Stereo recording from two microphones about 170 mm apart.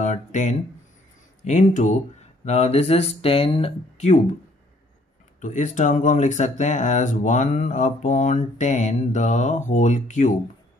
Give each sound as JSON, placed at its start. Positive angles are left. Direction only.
{"t": 0.0, "sound": "a sound", "side_deg": 45}
{"t": 1.4, "sound": "speech", "side_deg": 45}
{"t": 5.4, "sound": "speech", "side_deg": 45}